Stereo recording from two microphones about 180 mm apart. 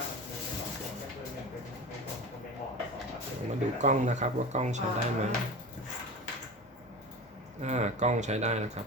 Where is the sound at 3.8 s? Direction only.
40° right (ahead or behind).